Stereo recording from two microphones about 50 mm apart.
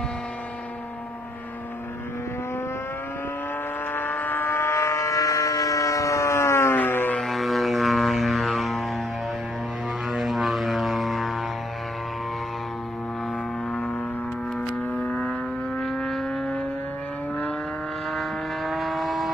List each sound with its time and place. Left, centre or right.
3.9 s vehicle: left
4.9 s civil defense siren: left
6.8 s music: left
7.2 s didgeridoo: centre
10.1 s vehicle: centre
14.8 s vehicle: left
15.8 s vehicle: centre
18.1 s vehicle: centre